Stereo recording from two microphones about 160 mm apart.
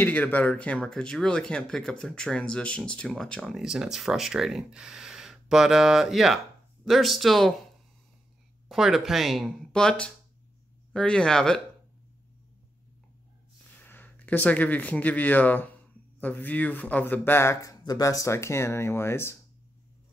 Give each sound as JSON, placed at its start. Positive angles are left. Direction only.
{"t": 0.0, "sound": "speech", "side_deg": 10}
{"t": 8.6, "sound": "speech", "side_deg": 0}
{"t": 13.7, "sound": "speech", "side_deg": 10}